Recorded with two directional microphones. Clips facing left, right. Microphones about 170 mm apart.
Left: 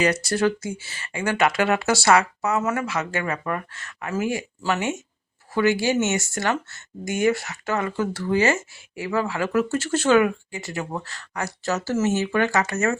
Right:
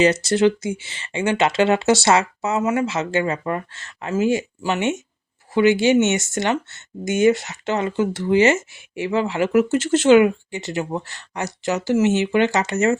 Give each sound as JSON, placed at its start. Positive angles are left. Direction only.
{"t": 0.0, "sound": "speech", "side_deg": -25}